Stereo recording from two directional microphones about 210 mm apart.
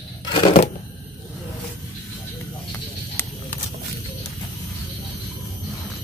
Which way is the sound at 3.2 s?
10° left (ahead or behind).